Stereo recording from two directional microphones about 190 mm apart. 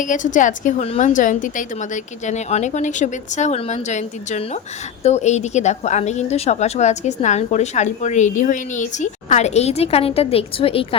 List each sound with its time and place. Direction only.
0.0 s a woman's voice: 40° left (ahead or behind)